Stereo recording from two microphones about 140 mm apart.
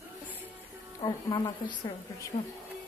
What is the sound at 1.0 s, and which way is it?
Speech, 35° left (ahead or behind).